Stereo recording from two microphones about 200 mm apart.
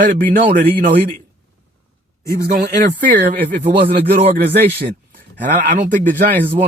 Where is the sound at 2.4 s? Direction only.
50° right (ahead or behind).